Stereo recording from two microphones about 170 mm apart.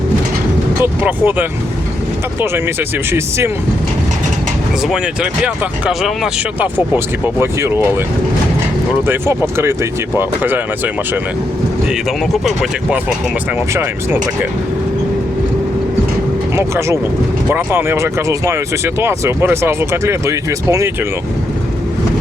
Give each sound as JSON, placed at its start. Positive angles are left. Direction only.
{"t": 0.8, "sound": "speech", "side_deg": -10}
{"t": 3.1, "sound": "speech", "side_deg": -15}
{"t": 4.8, "sound": "speech", "side_deg": -5}
{"t": 9.0, "sound": "speech", "side_deg": -15}
{"t": 11.9, "sound": "speech", "side_deg": 0}
{"t": 16.6, "sound": "speech", "side_deg": -15}